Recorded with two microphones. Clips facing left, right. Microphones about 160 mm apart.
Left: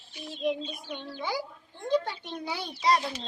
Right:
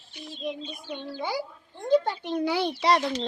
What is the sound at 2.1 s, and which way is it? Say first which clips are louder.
A child's voice: right 8 dB; 80° right.